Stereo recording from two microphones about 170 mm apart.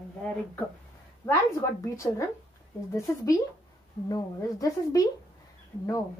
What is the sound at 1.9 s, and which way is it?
Speech, 15° left (ahead or behind).